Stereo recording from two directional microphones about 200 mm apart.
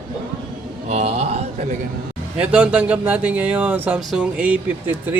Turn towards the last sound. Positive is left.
turn(degrees=-10)  # may be behind; listen again after turning